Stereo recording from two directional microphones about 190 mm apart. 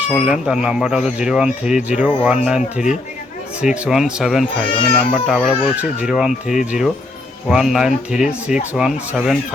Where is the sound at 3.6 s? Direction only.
5° right (ahead or behind).